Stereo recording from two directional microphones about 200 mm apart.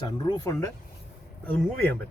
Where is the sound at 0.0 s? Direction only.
20° left (ahead or behind).